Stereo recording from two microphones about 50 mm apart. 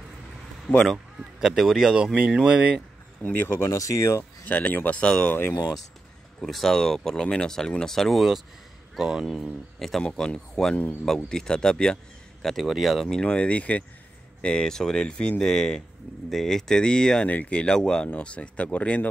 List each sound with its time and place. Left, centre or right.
0.9 s a man's voice: centre
2.1 s speech: right
3.2 s speech: left
3.5 s speech: left
4.5 s speech: left
5.0 s speech: centre
6.4 s a man's voice: centre
8.9 s speech: centre
9.2 s a man's voice: centre
10.0 s speech: centre
12.5 s a man's voice: centre
13.2 s speech: left
17.3 s speech: left